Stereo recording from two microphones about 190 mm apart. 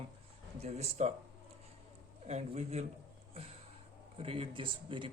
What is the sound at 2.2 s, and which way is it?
Speech, 35° right (ahead or behind).